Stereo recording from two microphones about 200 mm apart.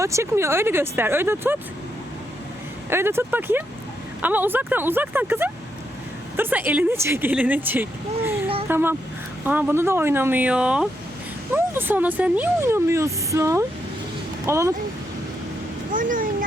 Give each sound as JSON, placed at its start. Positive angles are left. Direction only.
{"t": 0.0, "sound": "speech", "side_deg": -15}
{"t": 2.9, "sound": "speech", "side_deg": -10}
{"t": 15.9, "sound": "vehicle", "side_deg": -40}